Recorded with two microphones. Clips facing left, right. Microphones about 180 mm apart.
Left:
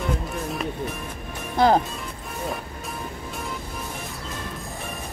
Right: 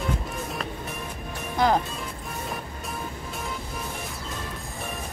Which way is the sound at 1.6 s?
30° left (ahead or behind).